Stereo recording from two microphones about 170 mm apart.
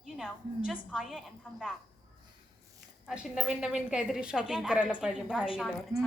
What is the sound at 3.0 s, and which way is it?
A woman's voice, 5° right (ahead or behind).